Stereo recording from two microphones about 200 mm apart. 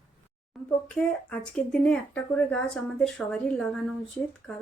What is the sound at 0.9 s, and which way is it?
Speech, 5° left (ahead or behind).